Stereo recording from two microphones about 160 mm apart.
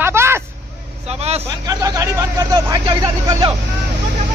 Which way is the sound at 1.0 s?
40° right (ahead or behind).